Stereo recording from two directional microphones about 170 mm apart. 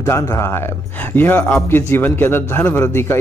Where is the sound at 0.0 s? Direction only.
15° left (ahead or behind).